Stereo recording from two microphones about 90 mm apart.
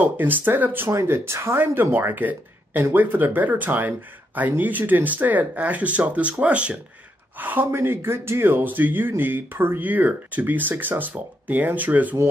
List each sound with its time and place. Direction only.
0.0 s speech: 20° right (ahead or behind)